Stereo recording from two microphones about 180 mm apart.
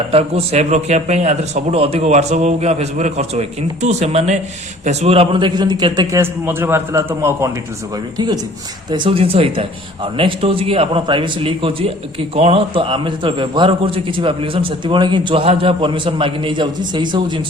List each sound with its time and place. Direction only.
0.1 s a man's voice: 35° right (ahead or behind); by 7.5 s 15° right (ahead or behind)
8.9 s a man's voice: 30° right (ahead or behind)